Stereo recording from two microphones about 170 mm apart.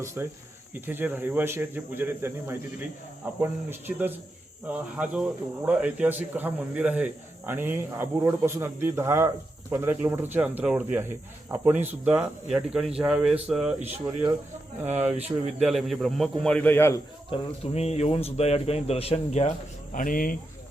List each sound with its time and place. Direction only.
0.0 s a man's voice: 15° right (ahead or behind); by 17.0 s 15° left (ahead or behind)
17.3 s speech: 35° left (ahead or behind); by 20.3 s 55° left (ahead or behind)